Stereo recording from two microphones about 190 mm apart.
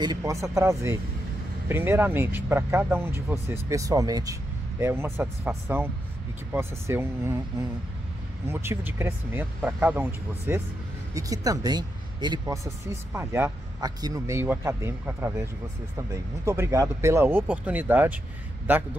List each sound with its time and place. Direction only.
0.0 s speech: 20° right (ahead or behind)